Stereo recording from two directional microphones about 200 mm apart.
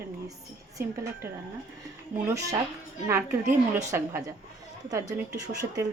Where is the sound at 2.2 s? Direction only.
15° right (ahead or behind).